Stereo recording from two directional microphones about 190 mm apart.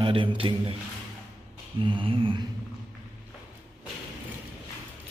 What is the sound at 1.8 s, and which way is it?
Speech, 25° right (ahead or behind).